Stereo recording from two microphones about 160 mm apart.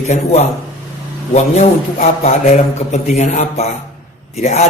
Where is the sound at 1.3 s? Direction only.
45° left (ahead or behind).